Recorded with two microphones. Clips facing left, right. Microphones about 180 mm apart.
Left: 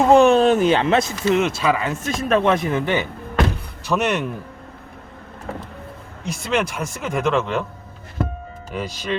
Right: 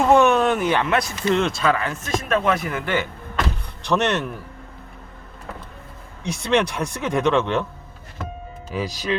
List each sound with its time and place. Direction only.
0.0 s speech: 25° left (ahead or behind)
1.2 s speech: 5° left (ahead or behind)
2.0 s speech: 30° left (ahead or behind); by 4.3 s 10° left (ahead or behind)
6.3 s speech: centre (ahead or behind)
8.7 s speech: centre (ahead or behind)